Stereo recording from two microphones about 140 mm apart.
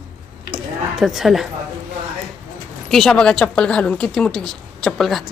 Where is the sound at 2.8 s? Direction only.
Centre (ahead or behind).